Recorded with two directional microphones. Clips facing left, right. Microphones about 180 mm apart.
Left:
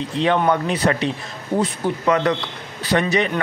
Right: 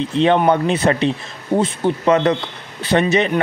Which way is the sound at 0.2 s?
25° right (ahead or behind).